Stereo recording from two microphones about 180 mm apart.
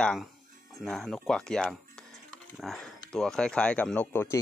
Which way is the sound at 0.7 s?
Centre (ahead or behind).